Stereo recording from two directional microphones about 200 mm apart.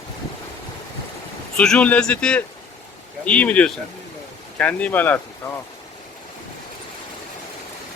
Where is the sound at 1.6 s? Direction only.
5° left (ahead or behind).